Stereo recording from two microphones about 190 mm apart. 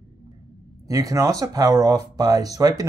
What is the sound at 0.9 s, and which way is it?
Speech, 20° right (ahead or behind).